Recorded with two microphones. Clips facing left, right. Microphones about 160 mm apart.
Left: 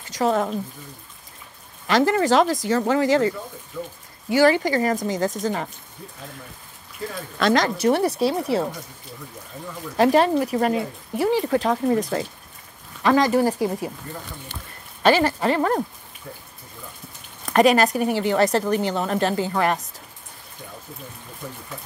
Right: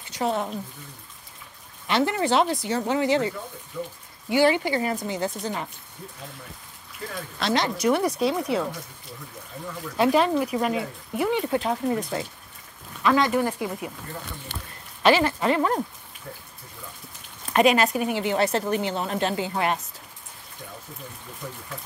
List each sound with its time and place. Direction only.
0.1 s speech: 45° left (ahead or behind)
1.9 s a woman's voice: 40° left (ahead or behind)
4.3 s a woman's voice: 40° left (ahead or behind)
7.3 s a woman's voice: 50° left (ahead or behind)
7.7 s speech: 30° left (ahead or behind)
9.9 s a woman's voice: 40° left (ahead or behind)
15.0 s speech: 45° left (ahead or behind)
17.5 s a woman's voice: 40° left (ahead or behind)